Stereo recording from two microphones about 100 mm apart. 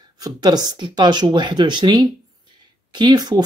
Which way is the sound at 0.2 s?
40° right (ahead or behind).